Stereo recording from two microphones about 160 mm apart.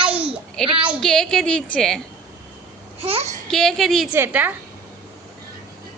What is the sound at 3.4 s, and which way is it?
Speech, 5° left (ahead or behind).